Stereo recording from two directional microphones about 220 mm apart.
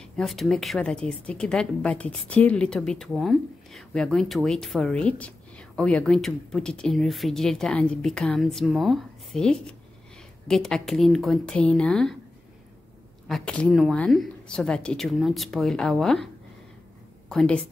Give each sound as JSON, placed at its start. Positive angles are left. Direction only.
{"t": 0.0, "sound": "a woman's voice", "side_deg": 0}
{"t": 13.3, "sound": "a woman's voice", "side_deg": 5}
{"t": 17.3, "sound": "a woman's voice", "side_deg": 5}